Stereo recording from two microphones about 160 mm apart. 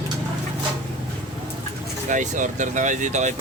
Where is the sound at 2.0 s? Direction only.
50° right (ahead or behind).